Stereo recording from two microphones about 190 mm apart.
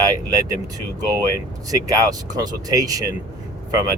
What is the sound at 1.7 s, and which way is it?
Speech, 20° right (ahead or behind).